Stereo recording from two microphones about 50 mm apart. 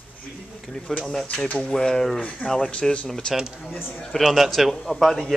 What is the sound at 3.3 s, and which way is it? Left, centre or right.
A man's voice, centre.